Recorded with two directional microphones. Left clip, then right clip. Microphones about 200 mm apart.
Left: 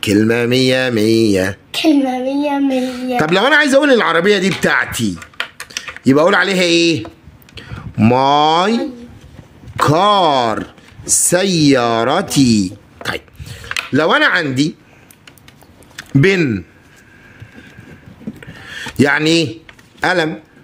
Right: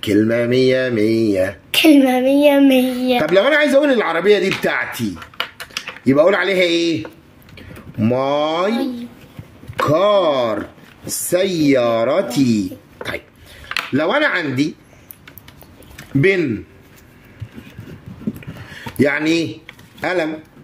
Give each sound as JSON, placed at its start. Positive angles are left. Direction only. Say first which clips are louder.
{"t": 0.0, "sound": "speech", "louder": "left 2 dB", "side_deg": 45}
{"t": 1.7, "sound": "speech", "louder": "right 4 dB", "side_deg": -50}
{"t": 3.2, "sound": "speech", "louder": "left 3 dB", "side_deg": 50}
{"t": 9.8, "sound": "speech", "louder": "left 2 dB", "side_deg": 50}
{"t": 16.0, "sound": "a sound", "louder": "left 2 dB", "side_deg": 50}
{"t": 18.7, "sound": "a sound", "louder": "left 3 dB", "side_deg": 50}
{"t": 20.0, "sound": "speech", "louder": "left 5 dB", "side_deg": 50}